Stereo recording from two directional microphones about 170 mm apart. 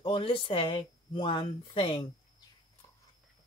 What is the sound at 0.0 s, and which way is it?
Speech, 30° left (ahead or behind).